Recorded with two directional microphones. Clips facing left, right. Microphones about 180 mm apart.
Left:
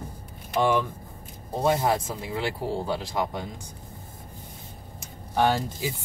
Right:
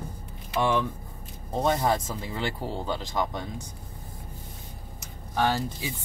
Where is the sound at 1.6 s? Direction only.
10° left (ahead or behind).